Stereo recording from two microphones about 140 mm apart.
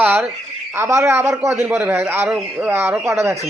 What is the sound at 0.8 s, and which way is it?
A man's voice, 20° right (ahead or behind).